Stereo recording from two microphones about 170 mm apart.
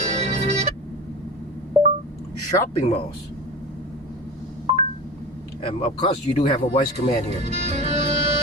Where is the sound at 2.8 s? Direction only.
35° left (ahead or behind).